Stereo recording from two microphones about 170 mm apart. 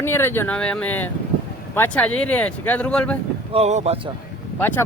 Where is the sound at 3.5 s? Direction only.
40° right (ahead or behind).